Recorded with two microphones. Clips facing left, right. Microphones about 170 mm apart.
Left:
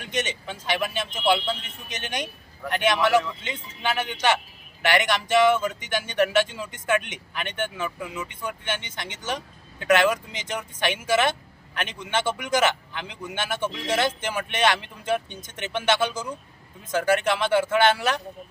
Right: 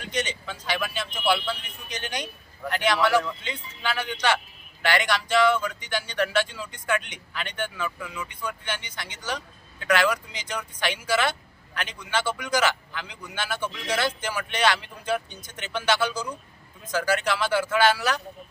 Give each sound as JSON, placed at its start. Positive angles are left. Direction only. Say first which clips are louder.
{"t": 0.0, "sound": "speech", "louder": "left 1 dB", "side_deg": 20}